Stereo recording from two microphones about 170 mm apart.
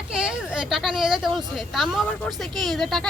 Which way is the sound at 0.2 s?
5° right (ahead or behind).